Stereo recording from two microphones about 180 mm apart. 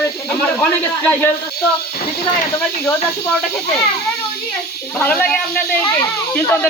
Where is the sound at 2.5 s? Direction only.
10° left (ahead or behind).